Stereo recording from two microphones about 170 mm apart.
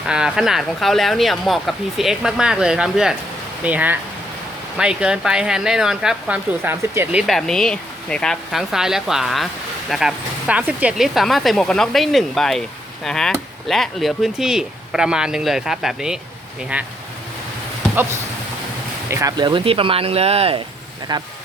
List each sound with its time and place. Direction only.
0.1 s speech: 5° right (ahead or behind)
19.1 s speech: 25° right (ahead or behind)
21.1 s speech: 25° right (ahead or behind)